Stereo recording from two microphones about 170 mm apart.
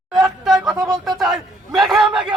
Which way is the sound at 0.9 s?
20° right (ahead or behind).